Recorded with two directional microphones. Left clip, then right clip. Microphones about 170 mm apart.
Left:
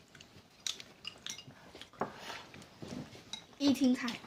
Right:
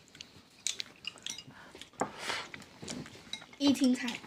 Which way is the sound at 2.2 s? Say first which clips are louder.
Right 9 dB; 25° right (ahead or behind).